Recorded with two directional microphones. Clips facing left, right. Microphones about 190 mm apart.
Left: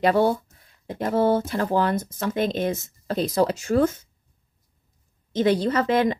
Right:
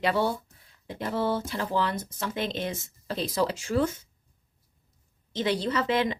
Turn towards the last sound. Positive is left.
turn(degrees=45)  # may be behind; listen again after turning